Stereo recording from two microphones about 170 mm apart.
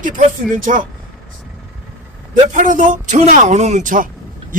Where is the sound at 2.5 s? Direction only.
50° right (ahead or behind).